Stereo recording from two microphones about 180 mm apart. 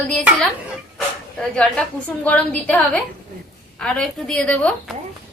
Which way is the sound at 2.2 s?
10° left (ahead or behind).